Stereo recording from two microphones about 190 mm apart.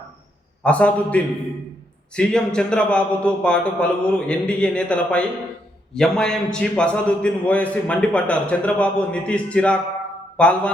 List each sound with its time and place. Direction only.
0.6 s a man's voice: 5° left (ahead or behind)